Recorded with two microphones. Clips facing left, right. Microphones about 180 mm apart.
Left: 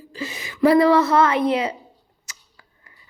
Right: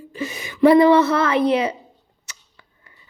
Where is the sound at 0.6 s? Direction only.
25° right (ahead or behind).